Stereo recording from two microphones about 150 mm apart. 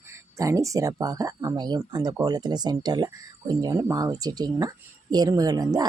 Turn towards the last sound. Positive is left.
turn(degrees=-25)  # may be behind; listen again after turning